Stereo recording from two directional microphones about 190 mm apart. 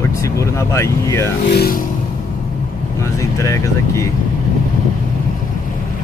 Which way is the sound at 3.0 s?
15° left (ahead or behind).